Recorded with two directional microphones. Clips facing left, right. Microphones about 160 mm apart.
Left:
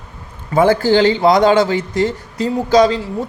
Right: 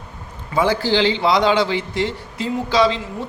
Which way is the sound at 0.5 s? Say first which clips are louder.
Left 6 dB; 50° left (ahead or behind).